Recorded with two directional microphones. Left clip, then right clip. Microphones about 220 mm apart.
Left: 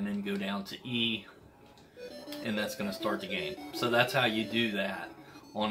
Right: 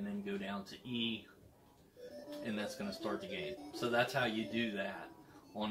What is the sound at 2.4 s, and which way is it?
Speech, 20° left (ahead or behind).